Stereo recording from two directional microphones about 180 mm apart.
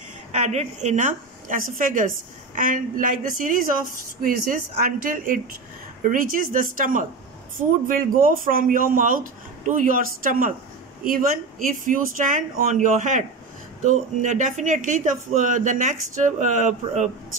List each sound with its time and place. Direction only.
0.3 s a woman's voice: 35° right (ahead or behind)